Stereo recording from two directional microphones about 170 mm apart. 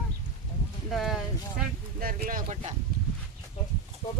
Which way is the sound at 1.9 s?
60° right (ahead or behind).